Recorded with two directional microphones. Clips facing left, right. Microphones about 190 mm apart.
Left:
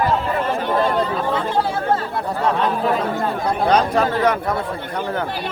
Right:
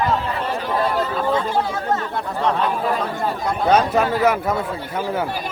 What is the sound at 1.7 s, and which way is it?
Chatter, 30° left (ahead or behind).